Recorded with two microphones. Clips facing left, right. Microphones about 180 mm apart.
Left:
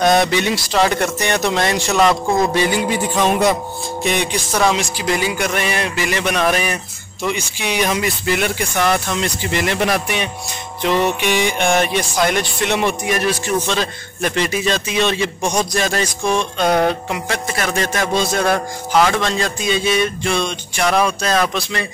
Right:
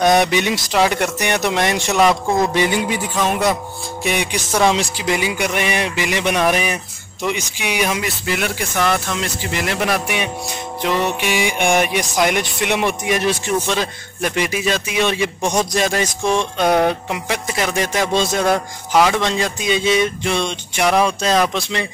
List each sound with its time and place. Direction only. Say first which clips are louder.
0.0 s music: even; 15° right (ahead or behind)
2.0 s music: even; 5° right (ahead or behind)
2.5 s music: left 1 dB; 20° right (ahead or behind)
3.2 s speech: left 2 dB; 5° right (ahead or behind)
4.0 s music: left 1 dB; 10° right (ahead or behind)
7.7 s speech: left 2 dB; 5° right (ahead or behind)
10.8 s music: left 3 dB; 5° right (ahead or behind)